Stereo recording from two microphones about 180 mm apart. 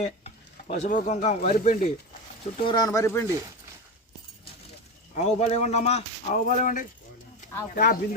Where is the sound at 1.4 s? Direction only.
60° left (ahead or behind).